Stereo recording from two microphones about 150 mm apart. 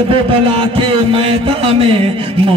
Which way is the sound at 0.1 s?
35° right (ahead or behind).